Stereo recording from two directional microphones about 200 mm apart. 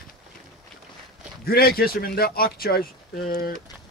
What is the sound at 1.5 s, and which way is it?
Speech, 50° left (ahead or behind).